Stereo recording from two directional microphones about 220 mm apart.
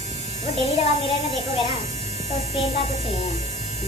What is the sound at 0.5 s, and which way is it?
A woman's voice, 30° left (ahead or behind).